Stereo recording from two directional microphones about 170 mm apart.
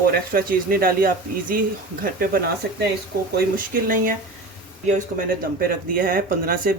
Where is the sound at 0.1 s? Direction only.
60° right (ahead or behind).